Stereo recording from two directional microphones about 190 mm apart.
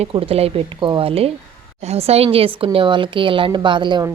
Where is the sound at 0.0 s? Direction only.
30° right (ahead or behind).